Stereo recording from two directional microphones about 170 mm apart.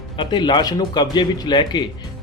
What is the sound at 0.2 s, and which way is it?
Speech, 25° left (ahead or behind).